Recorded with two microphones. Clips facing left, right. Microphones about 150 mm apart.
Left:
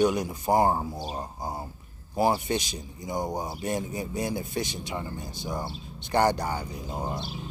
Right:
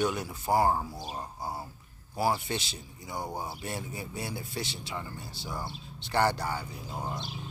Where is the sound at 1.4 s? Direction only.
15° left (ahead or behind).